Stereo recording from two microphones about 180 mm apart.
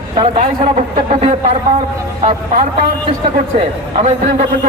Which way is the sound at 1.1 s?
35° right (ahead or behind).